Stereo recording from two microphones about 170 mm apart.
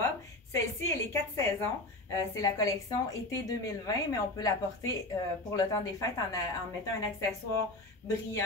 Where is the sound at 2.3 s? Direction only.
20° left (ahead or behind).